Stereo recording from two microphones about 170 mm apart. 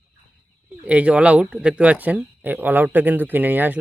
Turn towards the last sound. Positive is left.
turn(degrees=-10)  # may be behind; listen again after turning